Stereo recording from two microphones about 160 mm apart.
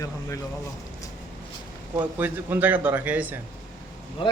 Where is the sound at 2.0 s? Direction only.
10° right (ahead or behind).